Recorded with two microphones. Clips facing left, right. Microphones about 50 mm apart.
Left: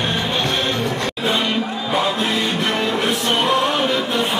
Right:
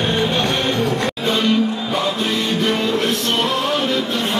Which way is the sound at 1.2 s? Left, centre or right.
Centre.